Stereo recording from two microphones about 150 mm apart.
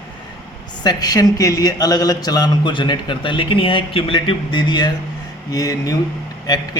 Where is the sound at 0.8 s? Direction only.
25° left (ahead or behind).